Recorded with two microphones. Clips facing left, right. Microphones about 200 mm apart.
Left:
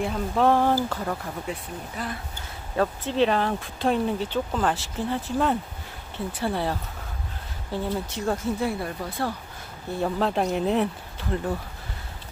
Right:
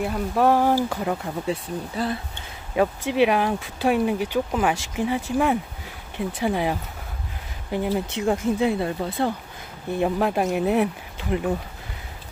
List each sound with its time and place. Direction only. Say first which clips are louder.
0.0 s speech: right 2 dB; 5° right (ahead or behind)
1.5 s speech: right 6 dB; 30° right (ahead or behind)
2.7 s speech: right 3 dB; 10° right (ahead or behind)